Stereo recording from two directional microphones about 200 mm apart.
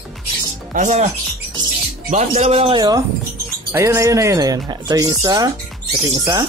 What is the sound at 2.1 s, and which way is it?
Speech, 35° right (ahead or behind).